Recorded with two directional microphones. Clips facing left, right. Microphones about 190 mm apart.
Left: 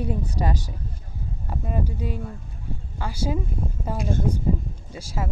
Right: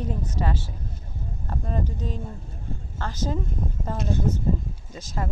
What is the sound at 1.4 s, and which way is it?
Speech, 10° left (ahead or behind).